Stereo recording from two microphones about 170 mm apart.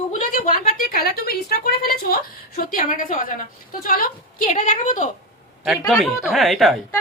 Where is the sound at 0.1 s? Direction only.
50° left (ahead or behind).